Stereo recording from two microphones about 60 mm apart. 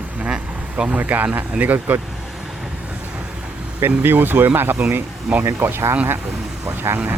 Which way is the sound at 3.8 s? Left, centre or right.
Right.